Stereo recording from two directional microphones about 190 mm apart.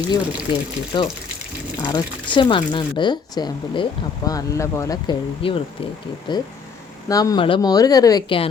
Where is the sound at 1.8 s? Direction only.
20° left (ahead or behind).